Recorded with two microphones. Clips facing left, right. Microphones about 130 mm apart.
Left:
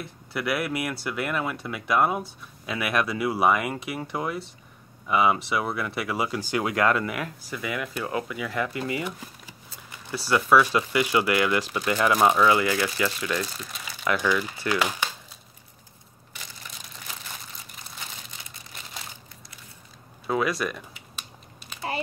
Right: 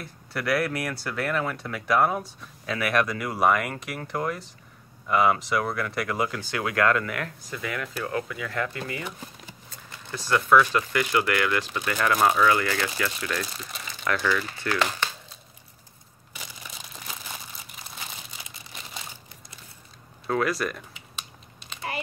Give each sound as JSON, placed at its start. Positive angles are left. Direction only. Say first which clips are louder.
{"t": 0.0, "sound": "speech", "louder": "left 1 dB", "side_deg": 5}
{"t": 13.6, "sound": "speech", "louder": "even", "side_deg": 0}
{"t": 14.0, "sound": "speech", "louder": "left 1 dB", "side_deg": 15}
{"t": 20.2, "sound": "speech", "louder": "even", "side_deg": 5}
{"t": 21.7, "sound": "a sound", "louder": "left 1 dB", "side_deg": 5}